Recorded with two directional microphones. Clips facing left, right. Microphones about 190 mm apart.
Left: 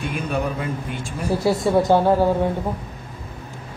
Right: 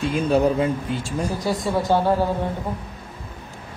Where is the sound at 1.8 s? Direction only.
20° left (ahead or behind).